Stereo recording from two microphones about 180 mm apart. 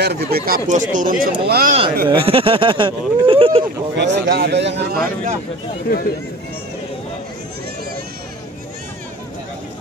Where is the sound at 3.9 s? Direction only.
70° right (ahead or behind).